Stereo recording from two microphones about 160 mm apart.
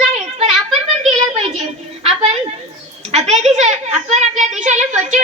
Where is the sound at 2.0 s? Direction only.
40° right (ahead or behind).